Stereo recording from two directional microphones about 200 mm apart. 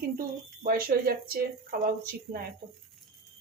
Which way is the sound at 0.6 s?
45° right (ahead or behind).